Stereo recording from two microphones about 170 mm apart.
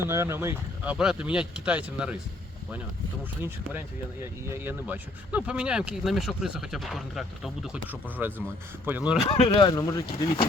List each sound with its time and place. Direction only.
0.0 s speech: 15° right (ahead or behind)
3.4 s speech: 10° right (ahead or behind)
9.4 s speech: 25° left (ahead or behind)